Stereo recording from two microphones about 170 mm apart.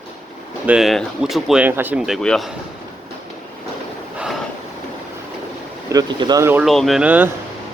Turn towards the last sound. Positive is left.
turn(degrees=-10)  # may be behind; listen again after turning